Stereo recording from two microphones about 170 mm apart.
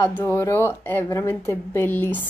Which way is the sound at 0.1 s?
15° left (ahead or behind).